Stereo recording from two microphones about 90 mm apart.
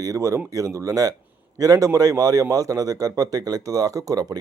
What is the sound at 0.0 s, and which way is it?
Speech, 35° right (ahead or behind).